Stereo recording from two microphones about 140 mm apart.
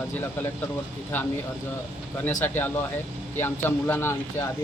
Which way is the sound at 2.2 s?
15° left (ahead or behind).